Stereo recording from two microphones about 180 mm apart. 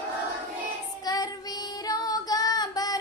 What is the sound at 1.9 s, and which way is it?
Female singing, 20° left (ahead or behind).